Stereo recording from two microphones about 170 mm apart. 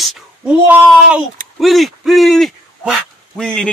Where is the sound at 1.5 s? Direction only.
Centre (ahead or behind).